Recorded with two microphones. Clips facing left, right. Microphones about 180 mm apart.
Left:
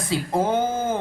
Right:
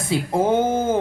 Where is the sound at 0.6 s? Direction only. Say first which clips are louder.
Right 4 dB; 25° right (ahead or behind).